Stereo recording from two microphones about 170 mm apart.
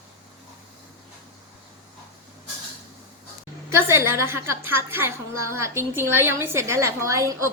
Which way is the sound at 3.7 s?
15° right (ahead or behind).